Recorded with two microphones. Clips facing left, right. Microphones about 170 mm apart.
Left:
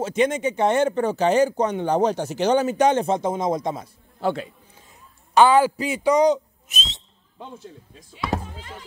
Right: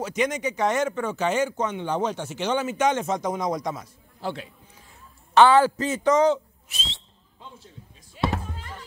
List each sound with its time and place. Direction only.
0.0 s speech: 30° left (ahead or behind)
4.2 s a man's voice: 50° left (ahead or behind)
5.3 s a man's voice: 10° left (ahead or behind)